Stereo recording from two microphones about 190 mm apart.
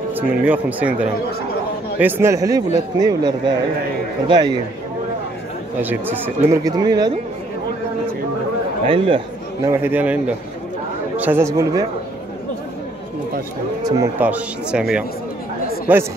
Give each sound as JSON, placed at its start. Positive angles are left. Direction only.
{"t": 0.1, "sound": "a man's voice", "side_deg": -10}
{"t": 2.0, "sound": "a man's voice", "side_deg": -10}
{"t": 5.8, "sound": "a man's voice", "side_deg": -10}
{"t": 8.8, "sound": "speech", "side_deg": -25}
{"t": 9.7, "sound": "a man's voice", "side_deg": -10}
{"t": 13.8, "sound": "a man's voice", "side_deg": -15}